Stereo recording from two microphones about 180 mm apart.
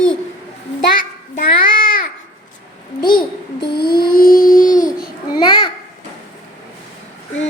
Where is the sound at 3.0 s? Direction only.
25° left (ahead or behind).